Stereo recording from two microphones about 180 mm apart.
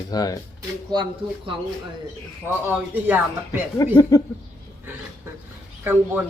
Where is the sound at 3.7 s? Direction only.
15° left (ahead or behind).